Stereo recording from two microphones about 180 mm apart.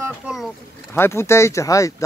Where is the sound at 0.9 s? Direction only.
15° left (ahead or behind).